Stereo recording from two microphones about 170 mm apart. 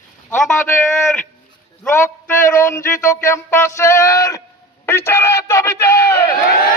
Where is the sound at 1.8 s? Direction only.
15° left (ahead or behind).